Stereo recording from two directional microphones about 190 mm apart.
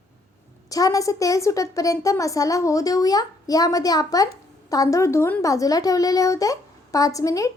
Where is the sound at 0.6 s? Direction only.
20° left (ahead or behind).